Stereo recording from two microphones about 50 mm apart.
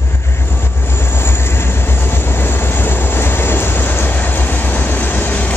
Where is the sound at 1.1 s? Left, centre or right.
Left.